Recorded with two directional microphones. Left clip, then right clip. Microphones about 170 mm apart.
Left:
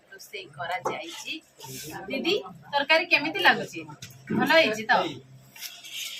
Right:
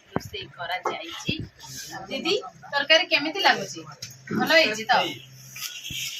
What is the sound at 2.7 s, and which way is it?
Speech, 25° right (ahead or behind).